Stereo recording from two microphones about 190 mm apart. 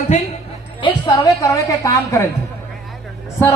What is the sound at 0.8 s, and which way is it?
A man's voice, 25° left (ahead or behind).